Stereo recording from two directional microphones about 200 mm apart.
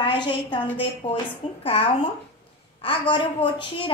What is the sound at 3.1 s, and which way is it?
Speech, 25° left (ahead or behind).